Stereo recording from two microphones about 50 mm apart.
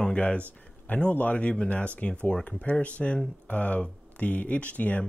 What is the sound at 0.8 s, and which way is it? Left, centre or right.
Speech, left.